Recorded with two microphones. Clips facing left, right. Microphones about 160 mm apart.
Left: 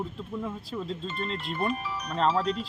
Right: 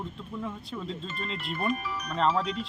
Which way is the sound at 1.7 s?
30° left (ahead or behind).